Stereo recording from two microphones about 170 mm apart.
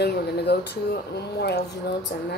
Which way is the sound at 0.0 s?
75° left (ahead or behind).